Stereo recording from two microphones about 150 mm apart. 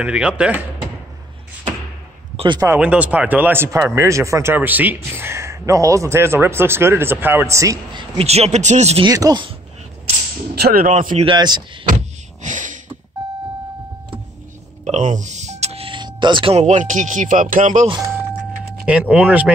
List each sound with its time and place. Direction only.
0.0 s speech: 5° right (ahead or behind)
2.3 s a sound: 30° right (ahead or behind)
2.8 s speech: 10° right (ahead or behind)
8.2 s speech: 45° right (ahead or behind)
9.0 s speech: 25° right (ahead or behind)
10.5 s speech: 90° right
10.9 s speech: 55° right (ahead or behind)
11.2 s speech: 30° right (ahead or behind)
11.9 s door: 55° right (ahead or behind)
14.9 s music: 50° right (ahead or behind); by 16.5 s 30° right (ahead or behind)
16.5 s speech: 55° right (ahead or behind)
18.9 s speech: 10° right (ahead or behind)